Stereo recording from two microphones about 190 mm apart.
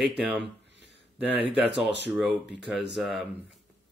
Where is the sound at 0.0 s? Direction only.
5° right (ahead or behind).